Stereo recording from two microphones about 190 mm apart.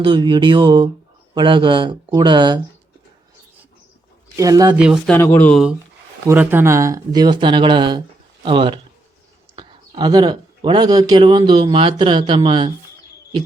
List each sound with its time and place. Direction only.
0.0 s speech: 25° right (ahead or behind)
4.4 s speech: 20° right (ahead or behind)
4.8 s speech: 5° right (ahead or behind)
5.1 s speech: 10° left (ahead or behind)
6.2 s speech: 10° right (ahead or behind); by 12.7 s 25° right (ahead or behind)